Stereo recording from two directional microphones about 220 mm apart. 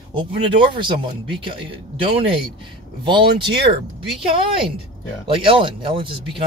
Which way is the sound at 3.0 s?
25° right (ahead or behind).